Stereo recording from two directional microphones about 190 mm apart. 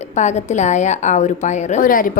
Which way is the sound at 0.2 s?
40° left (ahead or behind).